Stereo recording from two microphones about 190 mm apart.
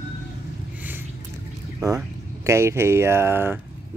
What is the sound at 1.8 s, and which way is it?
Speech, 15° right (ahead or behind).